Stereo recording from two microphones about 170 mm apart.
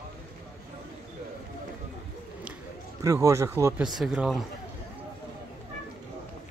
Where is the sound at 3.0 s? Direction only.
20° right (ahead or behind).